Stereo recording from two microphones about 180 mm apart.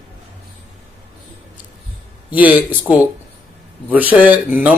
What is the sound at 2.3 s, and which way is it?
Speech, 10° right (ahead or behind).